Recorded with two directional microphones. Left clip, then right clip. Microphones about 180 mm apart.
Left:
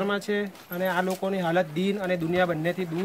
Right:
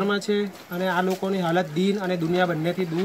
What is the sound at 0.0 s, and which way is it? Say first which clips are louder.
Speech: right 3 dB; 15° left (ahead or behind).